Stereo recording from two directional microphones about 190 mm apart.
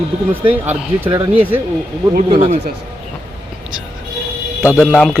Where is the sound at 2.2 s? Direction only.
25° right (ahead or behind).